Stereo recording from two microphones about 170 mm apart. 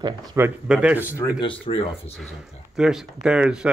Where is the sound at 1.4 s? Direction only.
30° left (ahead or behind).